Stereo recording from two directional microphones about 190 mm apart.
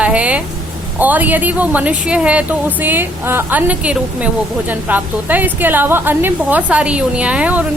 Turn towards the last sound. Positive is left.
turn(degrees=-5)  # may be behind; listen again after turning